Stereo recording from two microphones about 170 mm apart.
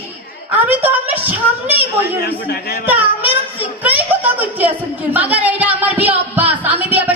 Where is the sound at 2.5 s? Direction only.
70° left (ahead or behind).